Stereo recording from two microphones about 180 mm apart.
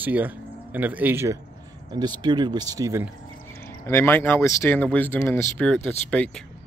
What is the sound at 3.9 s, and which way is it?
Speech, 15° left (ahead or behind).